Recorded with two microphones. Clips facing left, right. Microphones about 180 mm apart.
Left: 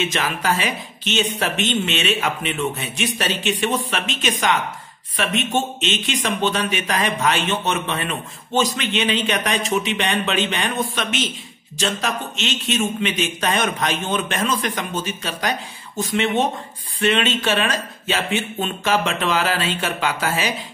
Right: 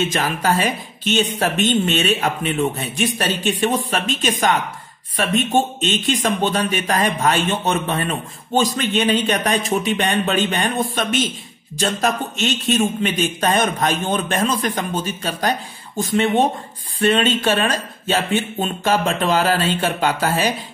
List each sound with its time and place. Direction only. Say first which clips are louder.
0.2 s a man's voice: right 3 dB; 45° right (ahead or behind)
13.6 s a woman's voice: right 3 dB; 35° right (ahead or behind)
17.4 s a woman's voice: right 2 dB; 35° right (ahead or behind)
17.6 s a woman's voice: right 2 dB; 50° right (ahead or behind)